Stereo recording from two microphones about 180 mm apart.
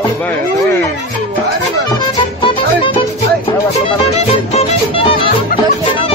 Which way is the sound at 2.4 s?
30° left (ahead or behind).